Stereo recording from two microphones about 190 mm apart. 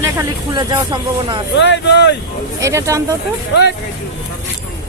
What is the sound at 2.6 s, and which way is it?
Speech, 15° right (ahead or behind).